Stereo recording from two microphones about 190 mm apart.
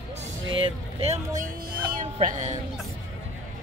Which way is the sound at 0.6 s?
30° right (ahead or behind).